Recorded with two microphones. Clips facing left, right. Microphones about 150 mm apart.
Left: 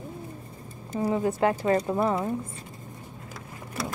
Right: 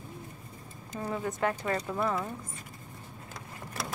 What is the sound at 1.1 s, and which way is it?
Speech, 25° left (ahead or behind).